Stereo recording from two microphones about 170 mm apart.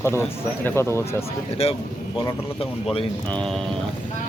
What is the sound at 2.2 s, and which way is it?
Speech, 30° left (ahead or behind).